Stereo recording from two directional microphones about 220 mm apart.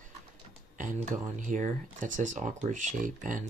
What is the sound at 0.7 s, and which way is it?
Speech, 35° right (ahead or behind).